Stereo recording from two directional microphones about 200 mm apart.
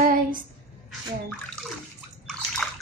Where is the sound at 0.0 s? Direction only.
45° right (ahead or behind).